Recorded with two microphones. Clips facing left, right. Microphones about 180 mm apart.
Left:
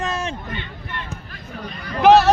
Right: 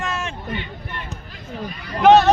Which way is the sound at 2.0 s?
Centre (ahead or behind).